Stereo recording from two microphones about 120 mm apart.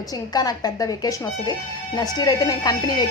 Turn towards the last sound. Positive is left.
turn(degrees=30)  # may be behind; listen again after turning